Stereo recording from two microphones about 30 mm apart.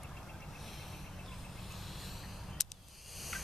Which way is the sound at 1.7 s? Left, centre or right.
Centre.